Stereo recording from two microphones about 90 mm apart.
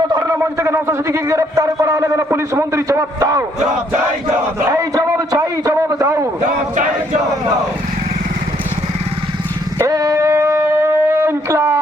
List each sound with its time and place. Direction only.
0.3 s a man's voice: 30° right (ahead or behind)
4.7 s a man's voice: 40° right (ahead or behind)
9.7 s a sound: 35° right (ahead or behind)